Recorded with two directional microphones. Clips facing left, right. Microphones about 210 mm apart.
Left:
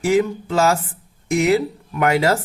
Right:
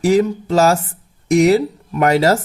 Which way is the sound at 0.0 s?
35° right (ahead or behind).